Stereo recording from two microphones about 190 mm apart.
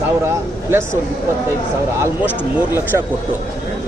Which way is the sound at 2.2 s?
5° right (ahead or behind).